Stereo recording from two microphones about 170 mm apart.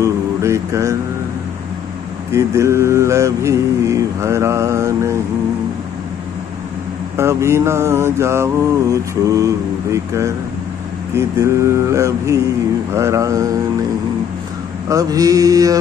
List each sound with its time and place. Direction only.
0.0 s mantra: 15° right (ahead or behind)
2.3 s mantra: 15° right (ahead or behind)
7.2 s mantra: 15° right (ahead or behind)
8.9 s speech: 20° right (ahead or behind)
11.1 s mantra: 15° right (ahead or behind)
12.9 s speech: 15° right (ahead or behind)
14.9 s speech: 20° right (ahead or behind)